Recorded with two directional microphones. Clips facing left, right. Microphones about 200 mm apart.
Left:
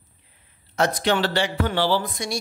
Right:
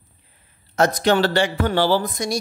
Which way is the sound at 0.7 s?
45° right (ahead or behind).